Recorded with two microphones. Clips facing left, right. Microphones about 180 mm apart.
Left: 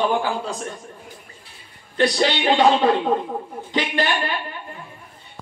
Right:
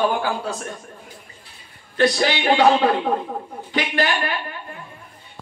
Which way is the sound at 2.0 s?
20° left (ahead or behind).